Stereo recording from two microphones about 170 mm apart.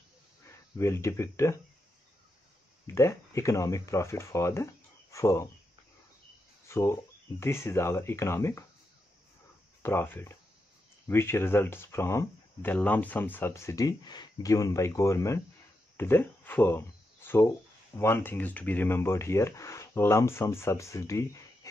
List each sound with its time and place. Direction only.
0.5 s speech: 15° left (ahead or behind)
2.9 s speech: 15° left (ahead or behind)
6.7 s speech: 15° left (ahead or behind)
9.8 s speech: 15° left (ahead or behind)